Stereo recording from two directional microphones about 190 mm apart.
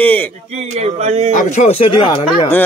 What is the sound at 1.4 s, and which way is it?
Speech, 40° left (ahead or behind).